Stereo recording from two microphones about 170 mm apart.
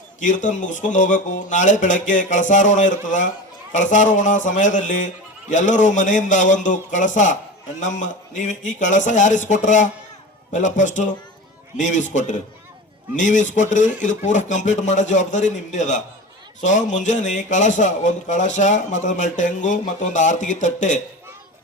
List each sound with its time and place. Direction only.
0.2 s speech: 50° left (ahead or behind)